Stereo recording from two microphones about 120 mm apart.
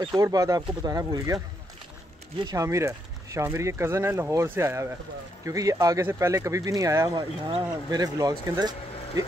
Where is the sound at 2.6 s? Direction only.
25° right (ahead or behind).